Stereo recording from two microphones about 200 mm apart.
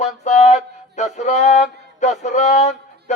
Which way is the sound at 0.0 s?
35° left (ahead or behind).